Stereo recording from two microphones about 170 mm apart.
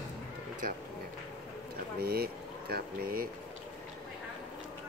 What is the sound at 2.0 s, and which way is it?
Speech, 70° right (ahead or behind).